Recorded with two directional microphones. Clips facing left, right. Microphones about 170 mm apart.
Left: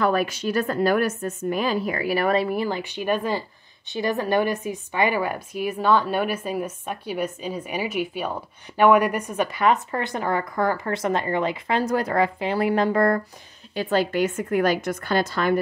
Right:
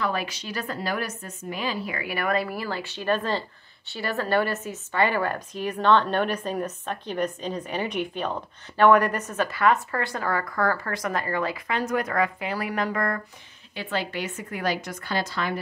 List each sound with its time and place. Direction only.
0.0 s a woman's voice: 50° left (ahead or behind)